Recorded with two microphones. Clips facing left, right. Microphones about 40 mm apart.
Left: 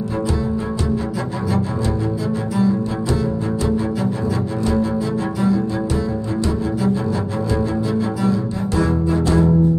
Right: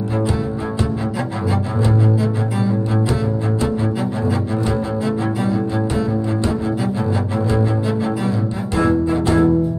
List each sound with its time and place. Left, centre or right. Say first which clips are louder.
8.2 s cello: left 1 dB; right